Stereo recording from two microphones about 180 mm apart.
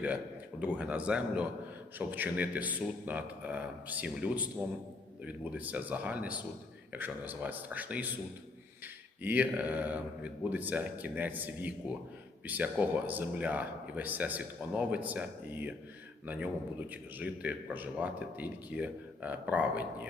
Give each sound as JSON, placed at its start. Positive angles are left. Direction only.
{"t": 0.6, "sound": "speech", "side_deg": -5}
{"t": 9.2, "sound": "speech", "side_deg": -10}